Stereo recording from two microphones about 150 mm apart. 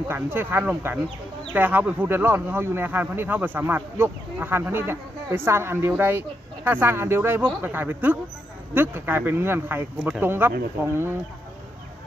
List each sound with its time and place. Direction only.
0.1 s speech: 15° right (ahead or behind)